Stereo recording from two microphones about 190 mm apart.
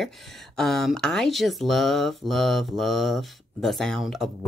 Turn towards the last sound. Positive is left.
turn(degrees=0)  # may be behind; listen again after turning